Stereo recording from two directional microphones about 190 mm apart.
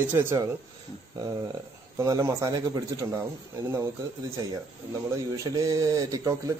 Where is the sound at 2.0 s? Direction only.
15° right (ahead or behind).